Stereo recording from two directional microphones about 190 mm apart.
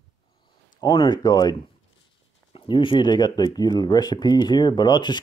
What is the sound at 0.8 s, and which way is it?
Speech, 20° left (ahead or behind).